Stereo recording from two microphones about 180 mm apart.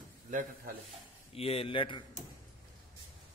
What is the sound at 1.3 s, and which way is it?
Speech, 35° left (ahead or behind).